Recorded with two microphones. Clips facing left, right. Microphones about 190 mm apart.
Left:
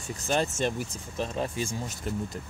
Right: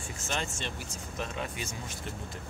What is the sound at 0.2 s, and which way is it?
Speech, 40° left (ahead or behind).